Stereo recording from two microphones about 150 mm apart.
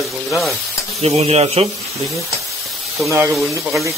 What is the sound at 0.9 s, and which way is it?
Speech, 45° right (ahead or behind).